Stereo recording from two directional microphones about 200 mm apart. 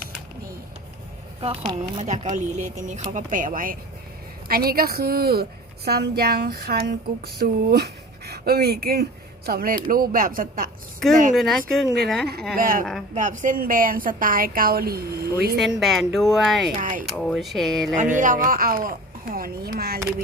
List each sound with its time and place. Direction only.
1.4 s a woman's voice: 30° right (ahead or behind); by 10.7 s 45° right (ahead or behind)
11.3 s speech: centre (ahead or behind)
12.5 s a woman's voice: 45° right (ahead or behind)
12.8 s speech: centre (ahead or behind)
13.1 s a woman's voice: 40° right (ahead or behind)
15.5 s speech: centre (ahead or behind)
16.7 s speech: 40° right (ahead or behind)
17.1 s speech: centre (ahead or behind)
17.9 s a woman's voice: 40° right (ahead or behind)